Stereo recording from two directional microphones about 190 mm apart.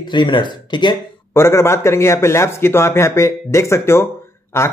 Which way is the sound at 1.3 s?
15° left (ahead or behind).